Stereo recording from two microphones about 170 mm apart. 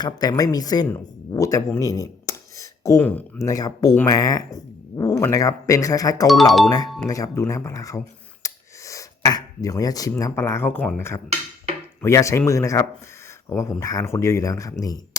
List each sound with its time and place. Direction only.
0.0 s speech: 25° left (ahead or behind)
6.8 s speech: centre (ahead or behind)
7.1 s speech: 20° left (ahead or behind)